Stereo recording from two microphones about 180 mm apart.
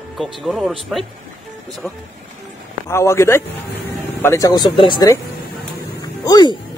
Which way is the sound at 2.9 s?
15° left (ahead or behind).